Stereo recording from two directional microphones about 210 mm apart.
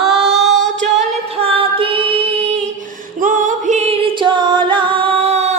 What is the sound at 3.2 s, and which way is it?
Music, 40° right (ahead or behind).